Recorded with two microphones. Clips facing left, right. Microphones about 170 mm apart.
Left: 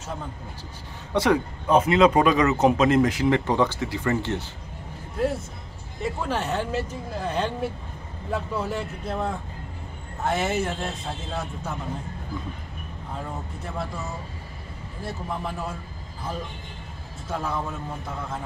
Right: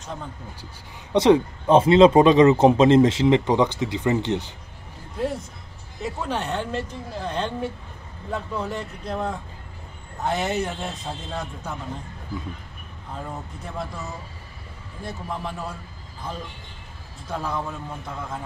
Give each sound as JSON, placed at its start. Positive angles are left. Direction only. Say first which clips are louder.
{"t": 1.1, "sound": "speech", "louder": "right 5 dB", "side_deg": -20}
{"t": 6.0, "sound": "speech", "louder": "left 1 dB", "side_deg": 0}
{"t": 13.3, "sound": "speech", "louder": "left 1 dB", "side_deg": 0}
{"t": 15.0, "sound": "speech", "louder": "even", "side_deg": 5}
{"t": 17.3, "sound": "speech", "louder": "even", "side_deg": 5}